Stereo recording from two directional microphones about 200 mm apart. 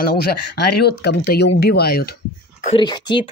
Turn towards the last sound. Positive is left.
turn(degrees=20)  # may be behind; listen again after turning